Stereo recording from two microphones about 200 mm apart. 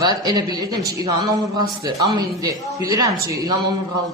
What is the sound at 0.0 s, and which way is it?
A woman's voice, 20° right (ahead or behind).